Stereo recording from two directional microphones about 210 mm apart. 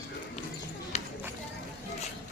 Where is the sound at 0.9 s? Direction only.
35° left (ahead or behind).